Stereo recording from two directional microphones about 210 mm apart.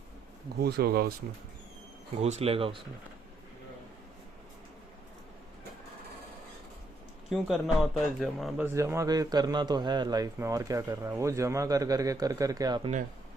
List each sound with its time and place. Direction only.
0.6 s speech: 50° right (ahead or behind)
2.2 s speech: 30° right (ahead or behind)
7.3 s speech: centre (ahead or behind); by 12.9 s 20° right (ahead or behind)